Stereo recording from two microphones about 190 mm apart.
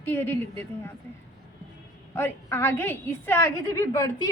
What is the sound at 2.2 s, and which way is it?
A woman's voice, 15° left (ahead or behind).